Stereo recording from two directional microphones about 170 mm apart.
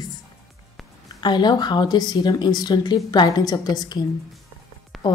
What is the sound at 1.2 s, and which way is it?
A woman's voice, 25° left (ahead or behind).